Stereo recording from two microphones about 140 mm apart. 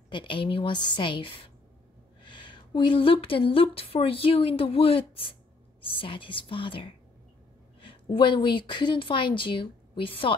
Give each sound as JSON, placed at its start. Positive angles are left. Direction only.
{"t": 0.1, "sound": "a woman's voice", "side_deg": 35}